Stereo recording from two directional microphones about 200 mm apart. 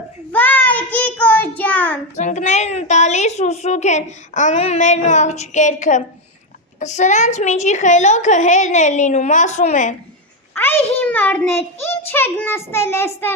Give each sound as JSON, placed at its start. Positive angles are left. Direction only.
{"t": 0.3, "sound": "child singing", "side_deg": 10}
{"t": 2.1, "sound": "a woman's voice", "side_deg": 35}
{"t": 10.5, "sound": "a child's voice", "side_deg": 10}